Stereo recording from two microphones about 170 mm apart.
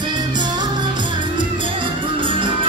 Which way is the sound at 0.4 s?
25° right (ahead or behind).